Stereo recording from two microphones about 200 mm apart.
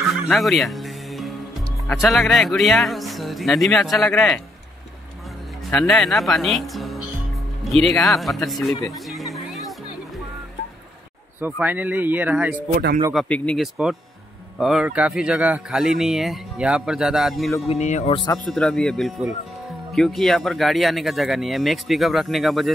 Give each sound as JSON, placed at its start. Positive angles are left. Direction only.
{"t": 0.0, "sound": "music", "side_deg": 0}
{"t": 1.9, "sound": "speech", "side_deg": 0}
{"t": 5.7, "sound": "speech", "side_deg": 5}
{"t": 11.4, "sound": "speech", "side_deg": -10}
{"t": 12.7, "sound": "speech", "side_deg": -45}
{"t": 13.1, "sound": "speech", "side_deg": 5}
{"t": 17.6, "sound": "speech", "side_deg": 35}
{"t": 18.5, "sound": "speech", "side_deg": 5}